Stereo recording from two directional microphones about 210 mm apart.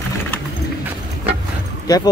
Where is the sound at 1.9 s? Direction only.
15° left (ahead or behind).